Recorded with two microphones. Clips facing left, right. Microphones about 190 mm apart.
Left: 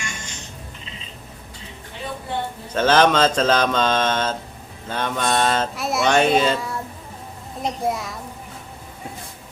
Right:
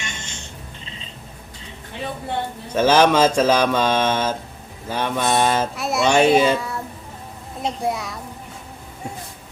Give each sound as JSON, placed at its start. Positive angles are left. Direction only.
{"t": 0.0, "sound": "a sound", "side_deg": -25}
{"t": 2.7, "sound": "speech", "side_deg": -10}
{"t": 5.7, "sound": "a child's voice", "side_deg": 0}
{"t": 6.6, "sound": "child singing", "side_deg": 0}
{"t": 7.6, "sound": "a child's voice", "side_deg": 0}